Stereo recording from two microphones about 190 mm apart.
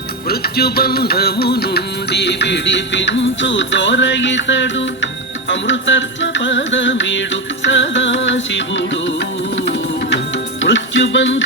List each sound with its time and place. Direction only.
0.3 s music: 55° left (ahead or behind); by 9.1 s 70° left (ahead or behind)
10.6 s music: 75° left (ahead or behind)